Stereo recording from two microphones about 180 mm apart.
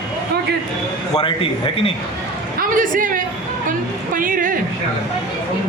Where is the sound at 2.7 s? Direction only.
50° right (ahead or behind).